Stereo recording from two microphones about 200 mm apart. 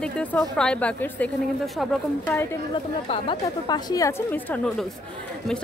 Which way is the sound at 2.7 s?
25° left (ahead or behind).